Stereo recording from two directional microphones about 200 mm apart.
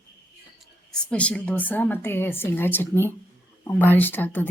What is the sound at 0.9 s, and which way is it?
Speech, 5° left (ahead or behind).